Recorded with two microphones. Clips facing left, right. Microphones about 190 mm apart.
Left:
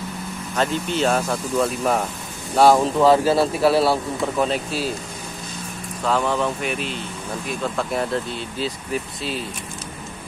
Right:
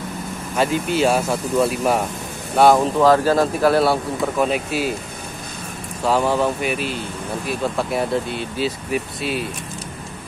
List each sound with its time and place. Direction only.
0.6 s speech: 10° right (ahead or behind)
4.5 s speech: 10° right (ahead or behind)
6.0 s speech: 10° right (ahead or behind)